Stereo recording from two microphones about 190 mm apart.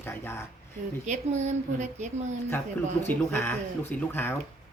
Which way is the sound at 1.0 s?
35° right (ahead or behind).